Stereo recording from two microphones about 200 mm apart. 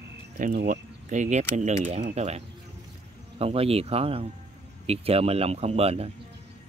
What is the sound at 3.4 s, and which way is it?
Speech, 30° right (ahead or behind).